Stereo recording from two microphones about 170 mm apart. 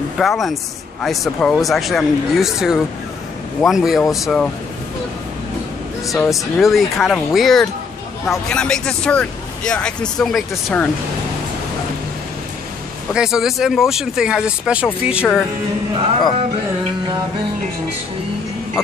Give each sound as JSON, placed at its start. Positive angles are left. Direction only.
{"t": 0.2, "sound": "speech", "side_deg": 0}
{"t": 6.0, "sound": "speech", "side_deg": 0}
{"t": 13.1, "sound": "speech", "side_deg": -5}